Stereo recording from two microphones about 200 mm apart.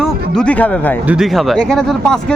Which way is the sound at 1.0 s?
Centre (ahead or behind).